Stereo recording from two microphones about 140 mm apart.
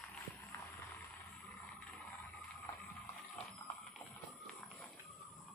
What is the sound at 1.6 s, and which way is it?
Vehicle, 15° left (ahead or behind).